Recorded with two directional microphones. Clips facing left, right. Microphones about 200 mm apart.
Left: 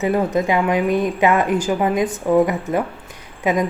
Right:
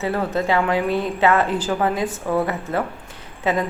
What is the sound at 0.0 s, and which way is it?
Speech, 15° left (ahead or behind).